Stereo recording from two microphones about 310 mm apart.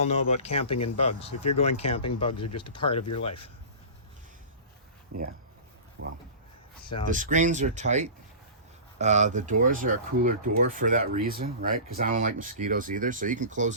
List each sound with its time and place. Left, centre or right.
0.0 s speech: centre
6.0 s speech: right
7.1 s speech: right